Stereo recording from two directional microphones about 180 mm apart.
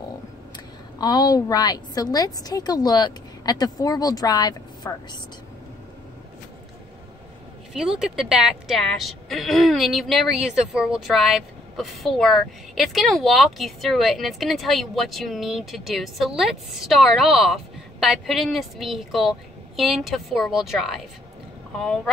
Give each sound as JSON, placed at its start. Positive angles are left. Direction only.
{"t": 0.9, "sound": "a woman's voice", "side_deg": 20}
{"t": 7.7, "sound": "a woman's voice", "side_deg": -5}